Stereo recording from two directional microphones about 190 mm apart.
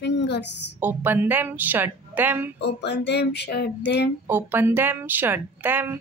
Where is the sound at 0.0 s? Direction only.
65° left (ahead or behind).